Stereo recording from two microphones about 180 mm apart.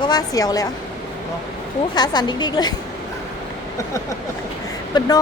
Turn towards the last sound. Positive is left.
turn(degrees=25)  # may be behind; listen again after turning